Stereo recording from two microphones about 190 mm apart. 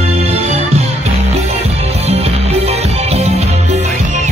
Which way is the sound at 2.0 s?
35° right (ahead or behind).